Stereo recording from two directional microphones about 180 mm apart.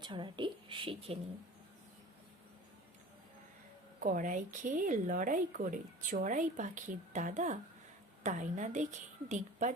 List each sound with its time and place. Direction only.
0.0 s a woman's voice: 25° right (ahead or behind)
4.0 s speech: 45° right (ahead or behind)